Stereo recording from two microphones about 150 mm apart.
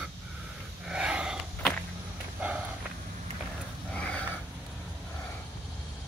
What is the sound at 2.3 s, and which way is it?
Walk, 10° right (ahead or behind).